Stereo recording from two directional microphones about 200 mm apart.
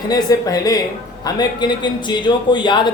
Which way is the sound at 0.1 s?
20° left (ahead or behind).